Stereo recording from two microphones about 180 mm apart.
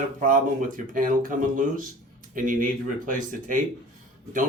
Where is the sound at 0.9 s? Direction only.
50° right (ahead or behind).